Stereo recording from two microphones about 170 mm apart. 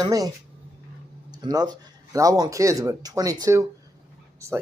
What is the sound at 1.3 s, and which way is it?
Speech, 25° right (ahead or behind).